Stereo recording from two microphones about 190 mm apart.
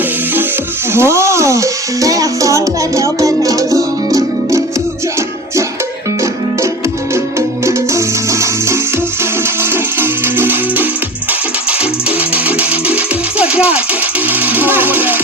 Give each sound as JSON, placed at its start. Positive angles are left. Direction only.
{"t": 0.9, "sound": "music", "side_deg": -15}
{"t": 7.1, "sound": "music", "side_deg": -15}
{"t": 14.3, "sound": "jackhammer", "side_deg": -10}